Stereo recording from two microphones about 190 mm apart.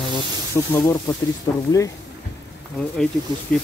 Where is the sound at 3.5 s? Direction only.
5° left (ahead or behind).